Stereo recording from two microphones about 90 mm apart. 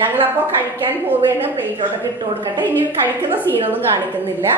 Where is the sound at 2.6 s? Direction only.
20° right (ahead or behind).